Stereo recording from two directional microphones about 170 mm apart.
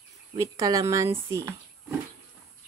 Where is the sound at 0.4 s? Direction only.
20° right (ahead or behind).